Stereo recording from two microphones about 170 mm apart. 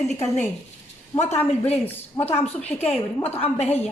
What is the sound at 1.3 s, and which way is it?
Speech, 40° left (ahead or behind).